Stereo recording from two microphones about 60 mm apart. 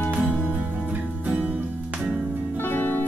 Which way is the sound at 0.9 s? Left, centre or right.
Right.